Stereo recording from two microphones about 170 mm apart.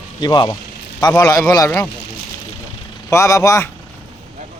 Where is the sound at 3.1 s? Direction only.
15° left (ahead or behind).